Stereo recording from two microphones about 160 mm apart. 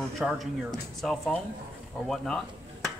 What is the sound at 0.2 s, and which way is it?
Speech, 5° right (ahead or behind).